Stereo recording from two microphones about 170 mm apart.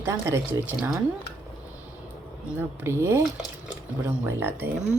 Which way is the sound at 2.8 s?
15° right (ahead or behind).